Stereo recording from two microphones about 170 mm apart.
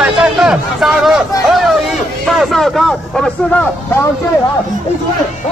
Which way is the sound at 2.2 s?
Centre (ahead or behind).